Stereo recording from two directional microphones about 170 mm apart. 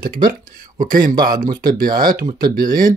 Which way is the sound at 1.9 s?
25° right (ahead or behind).